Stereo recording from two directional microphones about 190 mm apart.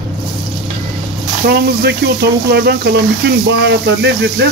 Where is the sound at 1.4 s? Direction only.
60° right (ahead or behind).